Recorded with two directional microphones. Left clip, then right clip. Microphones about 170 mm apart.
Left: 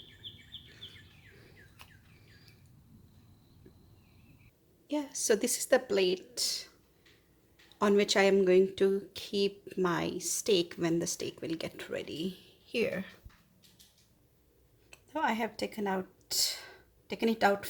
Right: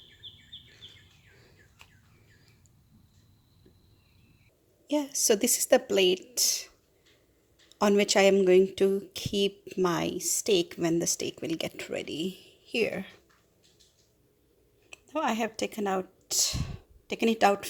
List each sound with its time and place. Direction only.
4.9 s speech: 30° right (ahead or behind)
7.8 s speech: 25° right (ahead or behind)
14.8 s speech: 30° right (ahead or behind)